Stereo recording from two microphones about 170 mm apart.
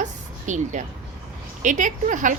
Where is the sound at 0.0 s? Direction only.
45° right (ahead or behind).